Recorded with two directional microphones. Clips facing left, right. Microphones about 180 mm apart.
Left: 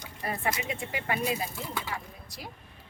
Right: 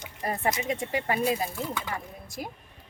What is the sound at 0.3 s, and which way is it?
A woman's voice, 40° right (ahead or behind).